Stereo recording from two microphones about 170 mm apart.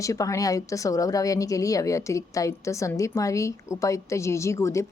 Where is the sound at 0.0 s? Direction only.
20° left (ahead or behind).